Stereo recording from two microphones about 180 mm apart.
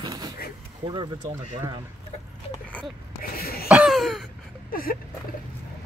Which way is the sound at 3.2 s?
55° left (ahead or behind).